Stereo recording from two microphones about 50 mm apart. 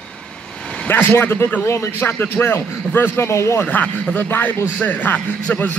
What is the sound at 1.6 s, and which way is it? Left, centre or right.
Speech, left.